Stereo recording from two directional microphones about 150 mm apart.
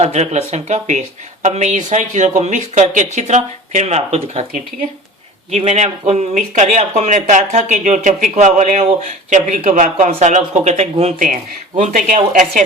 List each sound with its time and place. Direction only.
0.0 s speech: 45° right (ahead or behind)
5.5 s speech: 45° right (ahead or behind)
11.8 s speech: 60° right (ahead or behind)